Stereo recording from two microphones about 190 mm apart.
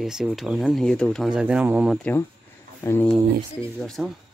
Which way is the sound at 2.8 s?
10° left (ahead or behind).